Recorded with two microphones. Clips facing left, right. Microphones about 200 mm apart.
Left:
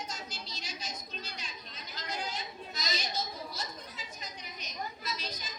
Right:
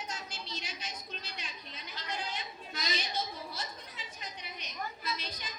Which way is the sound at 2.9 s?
40° left (ahead or behind).